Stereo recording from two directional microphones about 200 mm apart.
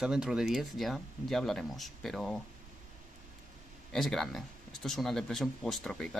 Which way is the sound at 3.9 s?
Centre (ahead or behind).